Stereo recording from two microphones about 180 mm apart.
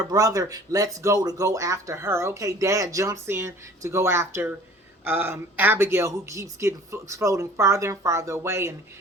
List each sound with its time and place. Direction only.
0.1 s speech: 20° right (ahead or behind)